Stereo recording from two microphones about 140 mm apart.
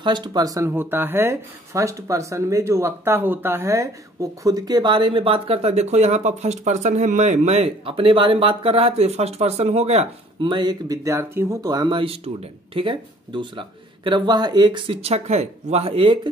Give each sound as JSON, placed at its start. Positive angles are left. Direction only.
{"t": 0.0, "sound": "speech", "side_deg": -30}
{"t": 10.5, "sound": "speech", "side_deg": -30}